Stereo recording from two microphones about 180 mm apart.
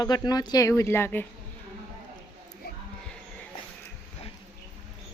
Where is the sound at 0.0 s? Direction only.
20° left (ahead or behind).